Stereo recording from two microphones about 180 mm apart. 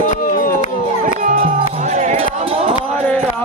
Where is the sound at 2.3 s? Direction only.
35° right (ahead or behind).